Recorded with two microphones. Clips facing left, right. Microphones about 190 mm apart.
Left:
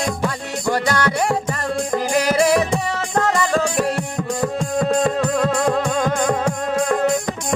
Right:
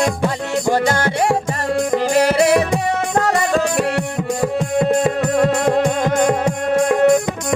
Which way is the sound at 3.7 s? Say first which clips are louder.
Right 2 dB; 65° right (ahead or behind).